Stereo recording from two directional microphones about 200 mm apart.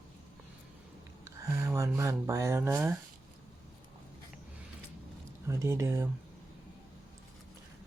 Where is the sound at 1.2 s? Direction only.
15° right (ahead or behind).